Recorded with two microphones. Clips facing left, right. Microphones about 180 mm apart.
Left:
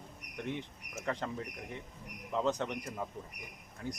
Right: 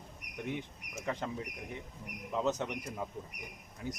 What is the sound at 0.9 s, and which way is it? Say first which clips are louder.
Speech: even; 10° right (ahead or behind).